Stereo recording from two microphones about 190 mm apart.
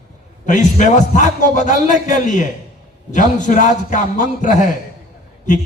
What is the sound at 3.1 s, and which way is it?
A man's voice, 40° left (ahead or behind).